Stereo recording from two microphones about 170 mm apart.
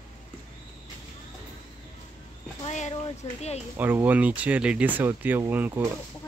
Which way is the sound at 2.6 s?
45° left (ahead or behind).